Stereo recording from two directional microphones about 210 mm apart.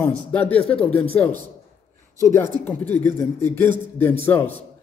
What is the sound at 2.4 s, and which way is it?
A man's voice, 10° left (ahead or behind).